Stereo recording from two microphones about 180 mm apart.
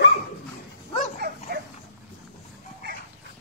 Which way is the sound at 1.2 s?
65° right (ahead or behind).